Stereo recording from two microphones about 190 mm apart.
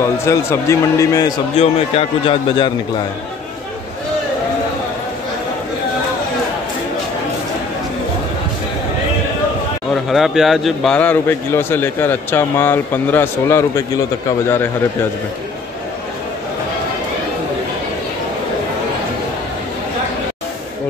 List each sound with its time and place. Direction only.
0.0 s a man's voice: 15° left (ahead or behind)
1.6 s a man's voice: 30° left (ahead or behind)
10.0 s a man's voice: centre (ahead or behind); by 14.0 s 15° left (ahead or behind)